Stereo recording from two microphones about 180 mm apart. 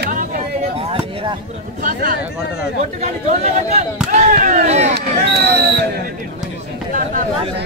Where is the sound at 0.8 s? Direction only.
30° right (ahead or behind).